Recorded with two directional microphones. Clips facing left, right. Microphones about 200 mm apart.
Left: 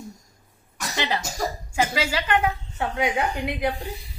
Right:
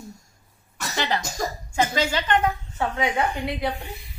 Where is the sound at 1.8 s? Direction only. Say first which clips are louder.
Right 1 dB; 5° left (ahead or behind).